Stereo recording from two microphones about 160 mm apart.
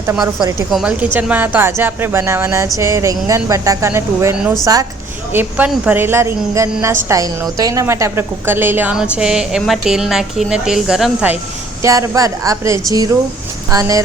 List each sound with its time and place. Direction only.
0.2 s speech: 25° right (ahead or behind)
0.7 s speech: 5° right (ahead or behind)
4.4 s a woman's voice: 5° right (ahead or behind)
4.6 s speech: 20° right (ahead or behind)
5.3 s a woman's voice: 10° right (ahead or behind)
11.8 s speech: 20° right (ahead or behind)